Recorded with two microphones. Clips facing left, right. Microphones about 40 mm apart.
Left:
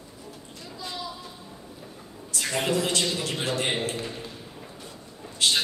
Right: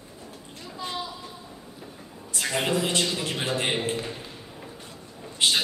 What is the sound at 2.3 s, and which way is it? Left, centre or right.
A man's voice, centre.